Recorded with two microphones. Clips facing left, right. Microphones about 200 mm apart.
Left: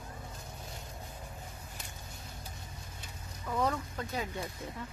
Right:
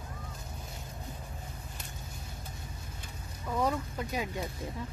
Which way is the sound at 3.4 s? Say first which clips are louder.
Right 1 dB; 10° right (ahead or behind).